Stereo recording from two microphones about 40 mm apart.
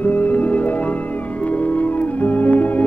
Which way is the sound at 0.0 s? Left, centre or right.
Left.